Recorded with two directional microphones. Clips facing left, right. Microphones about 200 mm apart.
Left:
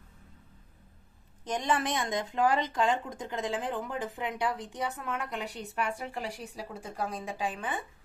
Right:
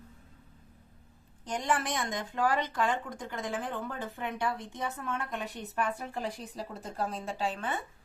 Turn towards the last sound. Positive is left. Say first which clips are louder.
# right 1 dB
turn(degrees=15)  # may be behind; listen again after turning